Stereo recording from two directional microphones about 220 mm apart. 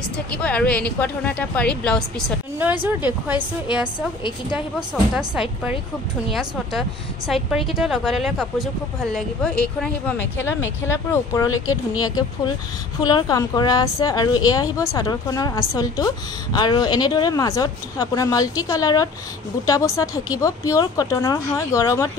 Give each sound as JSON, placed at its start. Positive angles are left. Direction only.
{"t": 0.4, "sound": "a woman's voice", "side_deg": 5}
{"t": 2.6, "sound": "speech", "side_deg": -10}
{"t": 5.1, "sound": "a woman's voice", "side_deg": -5}
{"t": 7.2, "sound": "a woman's voice", "side_deg": 0}
{"t": 13.0, "sound": "speech", "side_deg": 15}